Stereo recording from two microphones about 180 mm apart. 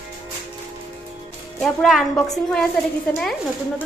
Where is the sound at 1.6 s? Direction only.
Centre (ahead or behind).